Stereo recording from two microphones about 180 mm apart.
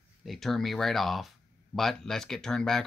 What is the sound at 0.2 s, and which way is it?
Speech, centre (ahead or behind).